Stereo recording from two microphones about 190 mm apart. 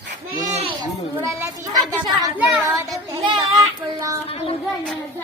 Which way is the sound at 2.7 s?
15° right (ahead or behind).